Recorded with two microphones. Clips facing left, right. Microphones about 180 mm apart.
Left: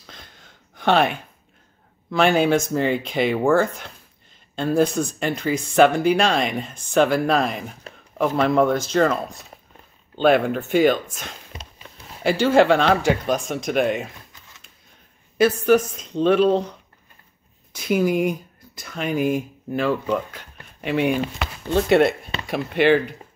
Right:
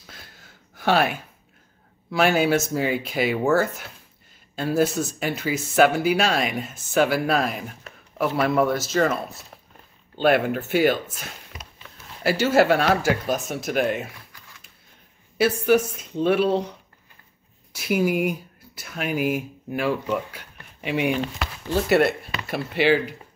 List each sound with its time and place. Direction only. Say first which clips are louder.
0.0 s a sound: left 1 dB; 5° right (ahead or behind)
2.0 s speech: left 2 dB; 5° right (ahead or behind)
11.5 s a sound: left 2 dB; 30° left (ahead or behind)
12.2 s speech: left 2 dB; 5° right (ahead or behind)
15.3 s speech: left 2 dB; 10° right (ahead or behind)
17.7 s speech: left 2 dB; 5° right (ahead or behind)
21.1 s speech: left 2 dB; 5° left (ahead or behind)